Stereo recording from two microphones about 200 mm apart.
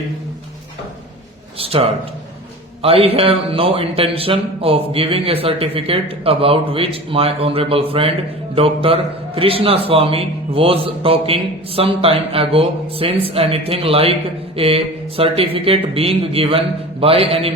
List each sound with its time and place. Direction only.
1.5 s a man's voice: 30° right (ahead or behind)